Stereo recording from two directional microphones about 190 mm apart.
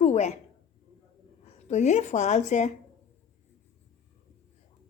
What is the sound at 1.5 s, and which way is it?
A woman's voice, 35° left (ahead or behind).